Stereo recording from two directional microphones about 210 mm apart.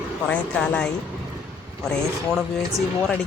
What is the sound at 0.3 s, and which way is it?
Speech, 5° left (ahead or behind).